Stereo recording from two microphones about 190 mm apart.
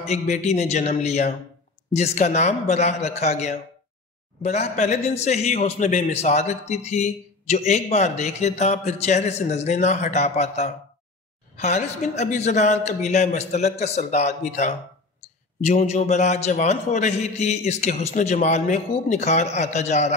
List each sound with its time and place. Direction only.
0.0 s a man's voice: 35° left (ahead or behind)